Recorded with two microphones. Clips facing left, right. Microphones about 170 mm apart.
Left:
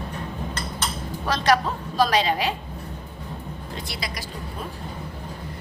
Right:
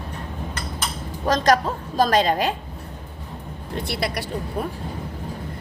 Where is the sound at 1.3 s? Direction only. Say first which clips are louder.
Right 3 dB; 45° right (ahead or behind).